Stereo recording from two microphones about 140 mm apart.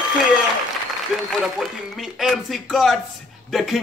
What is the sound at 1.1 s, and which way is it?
A man's voice, 5° right (ahead or behind).